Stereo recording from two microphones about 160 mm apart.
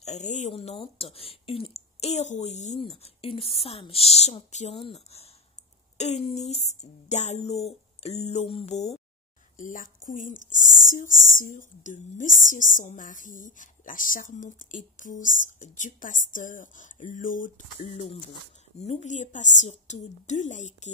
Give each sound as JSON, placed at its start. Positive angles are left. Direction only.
{"t": 0.0, "sound": "a woman's voice", "side_deg": 45}
{"t": 9.6, "sound": "a woman's voice", "side_deg": 55}
{"t": 17.7, "sound": "a woman's voice", "side_deg": 40}